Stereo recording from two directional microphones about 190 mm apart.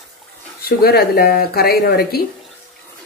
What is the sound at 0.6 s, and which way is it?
A woman's voice, 55° left (ahead or behind).